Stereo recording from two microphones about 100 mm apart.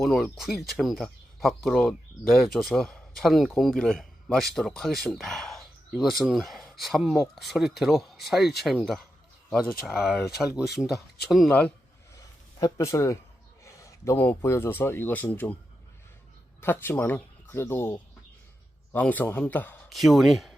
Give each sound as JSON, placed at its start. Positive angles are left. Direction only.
{"t": 0.0, "sound": "speech", "side_deg": 0}
{"t": 12.5, "sound": "speech", "side_deg": 35}
{"t": 13.7, "sound": "a sound", "side_deg": 30}
{"t": 14.2, "sound": "speech", "side_deg": 20}
{"t": 16.6, "sound": "a man's voice", "side_deg": 20}
{"t": 19.9, "sound": "speech", "side_deg": 0}